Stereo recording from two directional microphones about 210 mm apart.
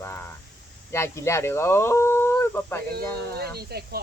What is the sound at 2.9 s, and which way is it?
Speech, 50° right (ahead or behind).